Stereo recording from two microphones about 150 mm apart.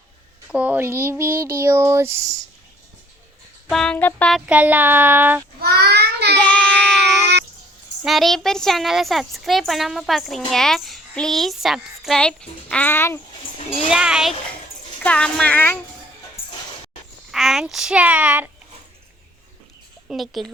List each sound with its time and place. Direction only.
0.4 s child singing: 10° right (ahead or behind)
3.7 s speech: 5° left (ahead or behind)
4.3 s child singing: 5° right (ahead or behind)
5.5 s child singing: 90° right
6.4 s child singing: 10° left (ahead or behind)
8.0 s speech: centre (ahead or behind)
13.8 s speech: 5° right (ahead or behind)
15.0 s speech: 10° left (ahead or behind)
17.3 s child singing: centre (ahead or behind)
20.1 s speech: centre (ahead or behind)